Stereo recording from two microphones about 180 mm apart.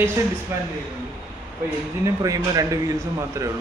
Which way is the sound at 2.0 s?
20° right (ahead or behind).